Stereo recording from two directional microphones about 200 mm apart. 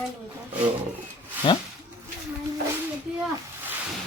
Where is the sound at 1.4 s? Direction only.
25° left (ahead or behind).